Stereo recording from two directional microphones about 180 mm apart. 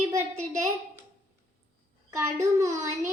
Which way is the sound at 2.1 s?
15° right (ahead or behind).